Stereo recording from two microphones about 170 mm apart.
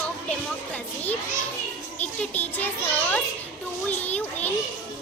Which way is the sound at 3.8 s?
10° left (ahead or behind).